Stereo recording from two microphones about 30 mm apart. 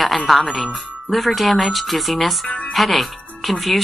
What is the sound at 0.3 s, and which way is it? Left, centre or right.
Speech, centre.